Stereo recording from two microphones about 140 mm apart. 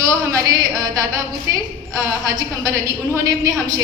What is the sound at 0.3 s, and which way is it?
Speech, 25° right (ahead or behind).